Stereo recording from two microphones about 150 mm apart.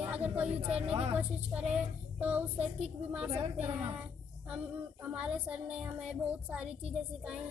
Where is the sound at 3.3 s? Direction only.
40° right (ahead or behind).